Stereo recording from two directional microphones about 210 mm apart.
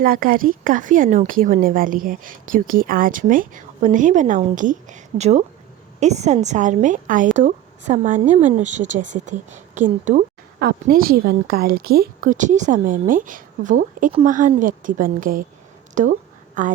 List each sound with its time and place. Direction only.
0.0 s a woman's voice: 40° right (ahead or behind)